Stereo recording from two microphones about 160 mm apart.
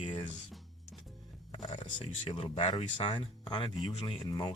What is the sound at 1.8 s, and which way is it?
Speech, 40° left (ahead or behind).